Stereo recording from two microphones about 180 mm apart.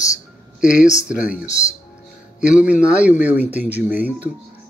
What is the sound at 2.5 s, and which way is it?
Speech, 5° right (ahead or behind).